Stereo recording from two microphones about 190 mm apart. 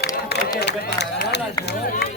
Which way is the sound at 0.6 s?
60° left (ahead or behind).